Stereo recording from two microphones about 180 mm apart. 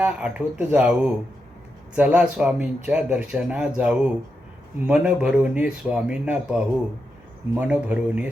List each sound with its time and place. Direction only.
0.0 s speech: 5° right (ahead or behind)